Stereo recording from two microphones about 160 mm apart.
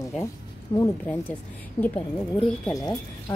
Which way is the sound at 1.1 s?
10° left (ahead or behind).